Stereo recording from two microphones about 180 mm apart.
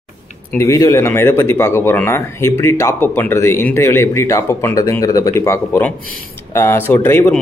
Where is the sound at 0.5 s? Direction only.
15° left (ahead or behind).